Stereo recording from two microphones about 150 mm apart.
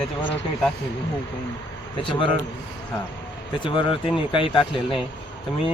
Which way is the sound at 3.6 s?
35° left (ahead or behind).